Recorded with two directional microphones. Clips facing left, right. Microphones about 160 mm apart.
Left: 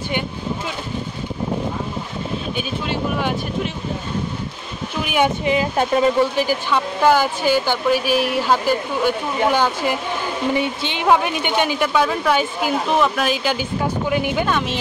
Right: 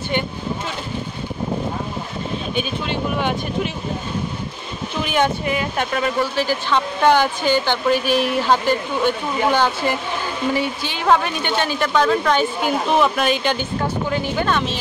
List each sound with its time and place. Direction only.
2.5 s speech: 5° left (ahead or behind)
5.0 s speech: 10° left (ahead or behind)
5.5 s speech: 25° left (ahead or behind)
6.3 s speech: 10° left (ahead or behind)